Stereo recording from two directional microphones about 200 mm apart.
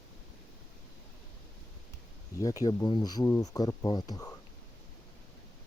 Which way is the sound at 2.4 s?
20° left (ahead or behind).